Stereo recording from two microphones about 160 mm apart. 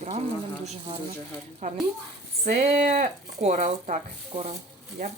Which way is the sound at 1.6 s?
55° right (ahead or behind).